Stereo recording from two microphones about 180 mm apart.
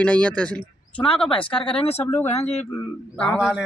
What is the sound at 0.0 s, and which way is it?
Speech, 5° left (ahead or behind).